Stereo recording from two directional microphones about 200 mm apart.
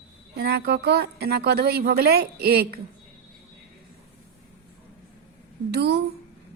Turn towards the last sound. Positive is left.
turn(degrees=-55)  # may be behind; listen again after turning